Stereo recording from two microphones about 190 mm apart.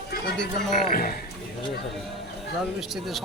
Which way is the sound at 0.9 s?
45° left (ahead or behind).